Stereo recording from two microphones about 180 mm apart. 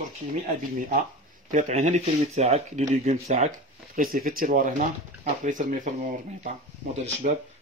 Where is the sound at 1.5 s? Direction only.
40° right (ahead or behind).